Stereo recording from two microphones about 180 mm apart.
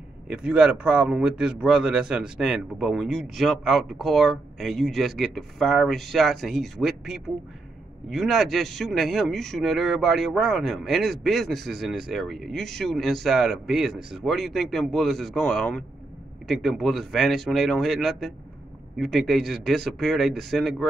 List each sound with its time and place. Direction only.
0.3 s speech: 5° right (ahead or behind)